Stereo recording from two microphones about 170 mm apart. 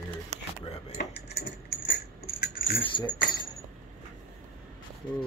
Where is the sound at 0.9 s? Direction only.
70° left (ahead or behind).